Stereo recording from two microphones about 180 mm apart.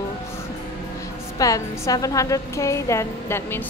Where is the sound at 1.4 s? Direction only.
20° left (ahead or behind).